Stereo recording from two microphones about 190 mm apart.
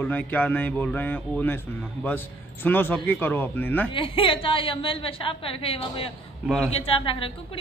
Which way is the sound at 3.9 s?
25° left (ahead or behind).